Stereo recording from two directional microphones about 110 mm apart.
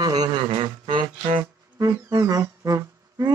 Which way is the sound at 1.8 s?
35° right (ahead or behind).